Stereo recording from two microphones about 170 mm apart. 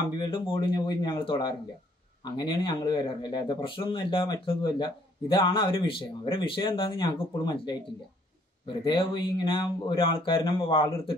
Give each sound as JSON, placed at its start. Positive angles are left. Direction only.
{"t": 0.2, "sound": "speech", "side_deg": 25}